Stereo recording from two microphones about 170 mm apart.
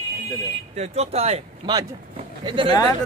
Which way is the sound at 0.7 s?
40° right (ahead or behind).